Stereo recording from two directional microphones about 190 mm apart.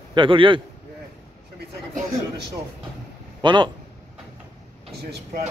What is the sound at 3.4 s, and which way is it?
Speech, 25° right (ahead or behind).